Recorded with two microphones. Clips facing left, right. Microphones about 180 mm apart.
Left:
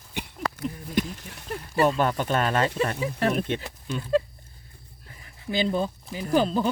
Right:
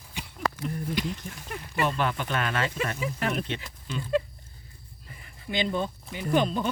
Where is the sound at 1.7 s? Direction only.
40° left (ahead or behind).